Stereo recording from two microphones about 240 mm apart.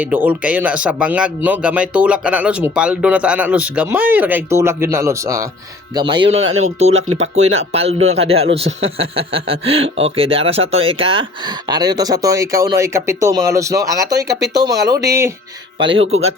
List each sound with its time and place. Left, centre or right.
0.0 s speech: centre